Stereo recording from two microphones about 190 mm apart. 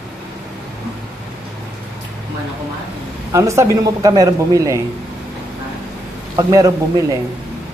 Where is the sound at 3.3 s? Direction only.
15° right (ahead or behind).